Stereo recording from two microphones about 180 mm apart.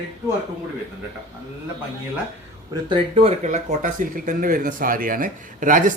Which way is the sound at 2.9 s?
35° right (ahead or behind).